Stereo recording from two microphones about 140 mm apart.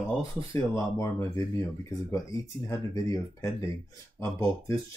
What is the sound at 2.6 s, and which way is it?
Speech, 25° left (ahead or behind).